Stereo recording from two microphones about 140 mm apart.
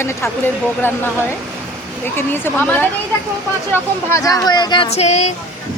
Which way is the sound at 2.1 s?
15° left (ahead or behind).